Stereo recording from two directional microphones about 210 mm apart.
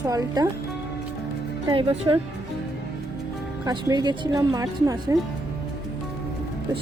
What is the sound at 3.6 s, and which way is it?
Speech, 20° right (ahead or behind).